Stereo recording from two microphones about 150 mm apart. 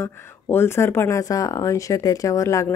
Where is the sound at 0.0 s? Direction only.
15° left (ahead or behind).